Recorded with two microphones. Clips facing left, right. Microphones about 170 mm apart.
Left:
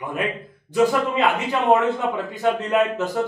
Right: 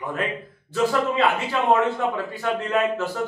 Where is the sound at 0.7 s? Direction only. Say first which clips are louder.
Left 3 dB; 15° left (ahead or behind).